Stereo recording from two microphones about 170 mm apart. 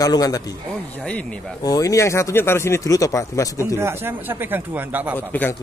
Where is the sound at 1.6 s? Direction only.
20° left (ahead or behind).